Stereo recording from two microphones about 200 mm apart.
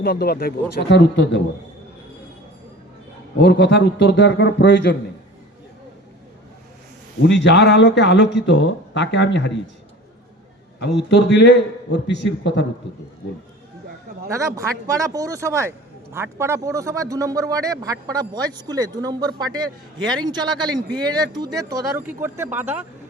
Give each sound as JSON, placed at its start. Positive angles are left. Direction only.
{"t": 0.0, "sound": "a man's voice", "side_deg": 50}
{"t": 3.3, "sound": "a man's voice", "side_deg": 60}
{"t": 7.2, "sound": "a man's voice", "side_deg": 60}
{"t": 10.8, "sound": "a man's voice", "side_deg": 60}
{"t": 14.3, "sound": "a man's voice", "side_deg": -15}